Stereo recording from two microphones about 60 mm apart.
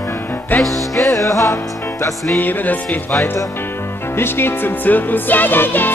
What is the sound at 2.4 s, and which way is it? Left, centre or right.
Music, left.